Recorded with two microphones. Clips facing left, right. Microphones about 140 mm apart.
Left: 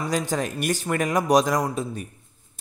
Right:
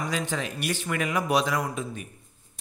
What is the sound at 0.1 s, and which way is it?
A man's voice, 45° left (ahead or behind).